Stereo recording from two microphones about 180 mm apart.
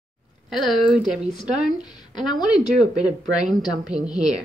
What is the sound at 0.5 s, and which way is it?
Speech, centre (ahead or behind).